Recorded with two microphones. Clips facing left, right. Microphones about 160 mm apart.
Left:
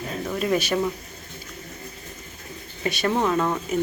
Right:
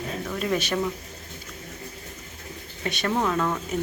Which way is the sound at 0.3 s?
5° left (ahead or behind).